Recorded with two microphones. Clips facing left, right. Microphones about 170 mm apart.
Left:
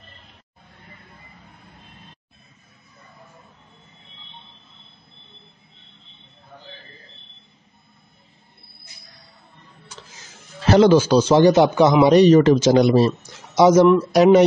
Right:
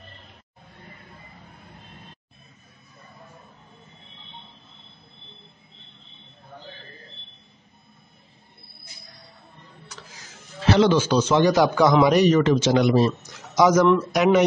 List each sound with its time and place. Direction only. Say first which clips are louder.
10.7 s speech: left 5 dB; 40° left (ahead or behind)